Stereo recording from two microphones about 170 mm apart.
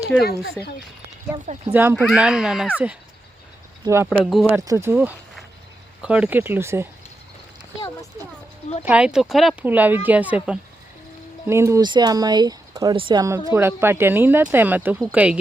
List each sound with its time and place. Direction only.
0.1 s speech: 5° left (ahead or behind)
1.3 s speech: 25° right (ahead or behind)
1.7 s a woman's voice: 10° right (ahead or behind)
4.2 s speech: centre (ahead or behind)
4.4 s a woman's voice: 15° right (ahead or behind)
8.8 s a woman's voice: 5° right (ahead or behind); by 13.2 s 30° right (ahead or behind)
13.5 s a woman's voice: 15° right (ahead or behind)